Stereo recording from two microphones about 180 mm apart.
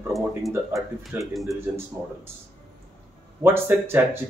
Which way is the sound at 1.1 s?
10° right (ahead or behind).